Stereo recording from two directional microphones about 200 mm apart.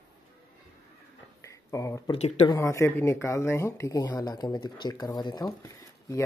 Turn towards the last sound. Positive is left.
turn(degrees=15)  # may be behind; listen again after turning